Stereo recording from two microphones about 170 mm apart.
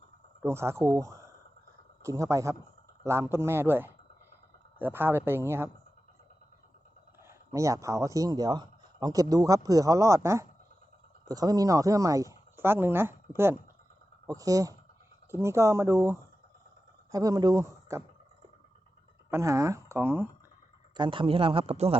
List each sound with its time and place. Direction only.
0.4 s speech: 15° right (ahead or behind)
7.2 s speech: 15° right (ahead or behind)
19.3 s speech: 15° right (ahead or behind)
20.9 s a man's voice: 30° right (ahead or behind)